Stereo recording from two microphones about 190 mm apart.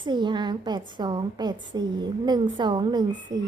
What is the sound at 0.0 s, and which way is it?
A woman's voice, 25° right (ahead or behind).